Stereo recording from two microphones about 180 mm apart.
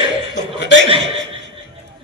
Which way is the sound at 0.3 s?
75° left (ahead or behind).